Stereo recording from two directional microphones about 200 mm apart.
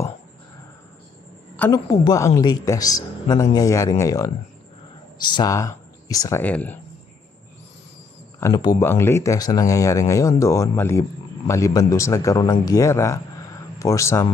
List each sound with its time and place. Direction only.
1.6 s speech: 15° left (ahead or behind)
8.4 s speech: 20° left (ahead or behind)